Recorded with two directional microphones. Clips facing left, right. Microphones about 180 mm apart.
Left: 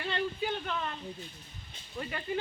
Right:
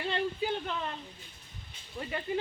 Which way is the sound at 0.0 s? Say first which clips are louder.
Right 1 dB; 25° right (ahead or behind).